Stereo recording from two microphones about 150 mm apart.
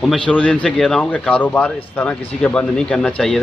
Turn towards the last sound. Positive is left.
turn(degrees=5)  # may be behind; listen again after turning